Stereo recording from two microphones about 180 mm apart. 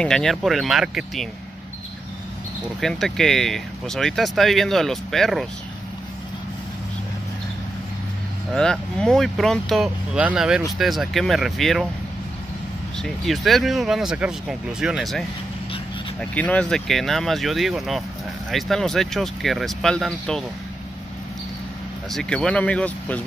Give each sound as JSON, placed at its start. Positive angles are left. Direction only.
{"t": 0.0, "sound": "speech", "side_deg": 5}
{"t": 2.8, "sound": "speech", "side_deg": 5}
{"t": 8.5, "sound": "speech", "side_deg": 5}
{"t": 13.0, "sound": "speech", "side_deg": 0}
{"t": 22.1, "sound": "speech", "side_deg": 5}